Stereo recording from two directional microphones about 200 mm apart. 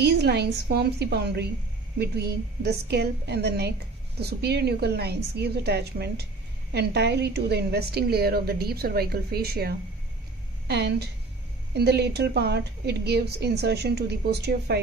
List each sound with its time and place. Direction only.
0.0 s a woman's voice: 55° right (ahead or behind)